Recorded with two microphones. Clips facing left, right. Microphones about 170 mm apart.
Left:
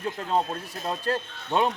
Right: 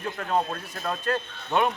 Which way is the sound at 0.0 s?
25° left (ahead or behind).